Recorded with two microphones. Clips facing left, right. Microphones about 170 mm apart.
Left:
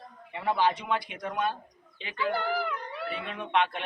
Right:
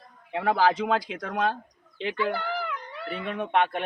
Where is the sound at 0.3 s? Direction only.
90° right.